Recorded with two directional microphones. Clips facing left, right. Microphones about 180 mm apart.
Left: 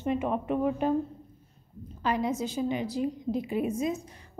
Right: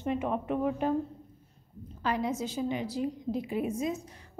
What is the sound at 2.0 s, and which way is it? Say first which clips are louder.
A woman's voice: left 2 dB; 15° left (ahead or behind).